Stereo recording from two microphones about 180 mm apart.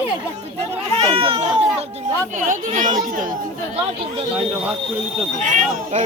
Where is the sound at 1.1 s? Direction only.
30° right (ahead or behind).